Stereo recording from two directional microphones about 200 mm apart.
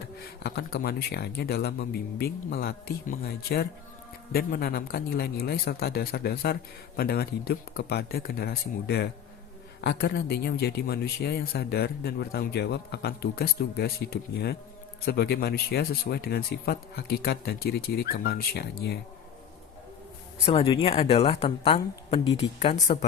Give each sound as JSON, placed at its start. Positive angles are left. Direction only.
{"t": 0.2, "sound": "speech", "side_deg": 50}
{"t": 20.4, "sound": "speech", "side_deg": 30}